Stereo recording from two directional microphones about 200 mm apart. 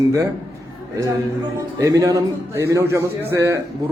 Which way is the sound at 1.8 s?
15° right (ahead or behind).